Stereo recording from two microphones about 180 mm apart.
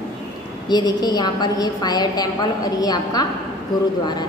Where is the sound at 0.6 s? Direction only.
25° left (ahead or behind).